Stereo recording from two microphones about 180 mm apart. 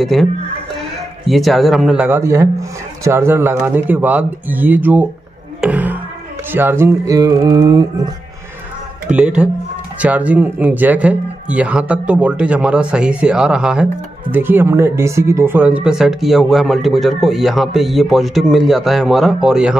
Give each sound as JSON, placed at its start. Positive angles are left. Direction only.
{"t": 0.0, "sound": "speech", "side_deg": 0}
{"t": 5.6, "sound": "music", "side_deg": -10}
{"t": 9.1, "sound": "speech", "side_deg": -5}